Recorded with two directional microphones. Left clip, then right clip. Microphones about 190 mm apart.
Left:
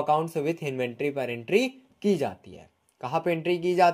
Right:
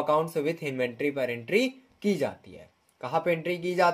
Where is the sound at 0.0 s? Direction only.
35° left (ahead or behind).